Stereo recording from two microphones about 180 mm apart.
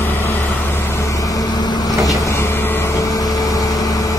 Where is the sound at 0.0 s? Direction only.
10° left (ahead or behind).